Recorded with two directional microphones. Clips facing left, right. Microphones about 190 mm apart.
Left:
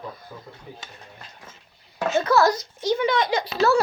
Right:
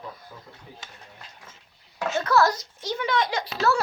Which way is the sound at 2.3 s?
Centre (ahead or behind).